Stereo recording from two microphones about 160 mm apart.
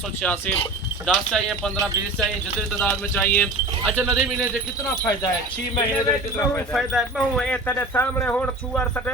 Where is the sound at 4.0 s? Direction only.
10° right (ahead or behind).